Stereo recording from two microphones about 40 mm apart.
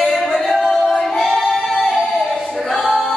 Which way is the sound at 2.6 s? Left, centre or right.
Centre.